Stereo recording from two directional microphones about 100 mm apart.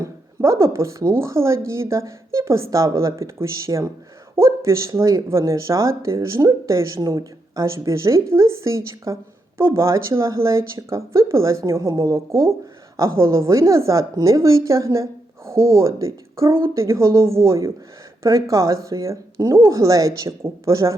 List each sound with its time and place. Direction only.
0.0 s a woman's voice: 30° right (ahead or behind)